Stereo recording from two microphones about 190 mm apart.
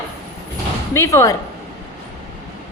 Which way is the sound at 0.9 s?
15° left (ahead or behind).